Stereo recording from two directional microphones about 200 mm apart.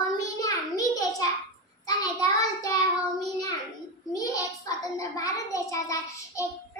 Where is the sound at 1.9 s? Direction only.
20° left (ahead or behind).